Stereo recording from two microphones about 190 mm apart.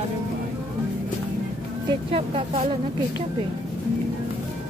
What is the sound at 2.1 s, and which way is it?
Speech, 30° right (ahead or behind).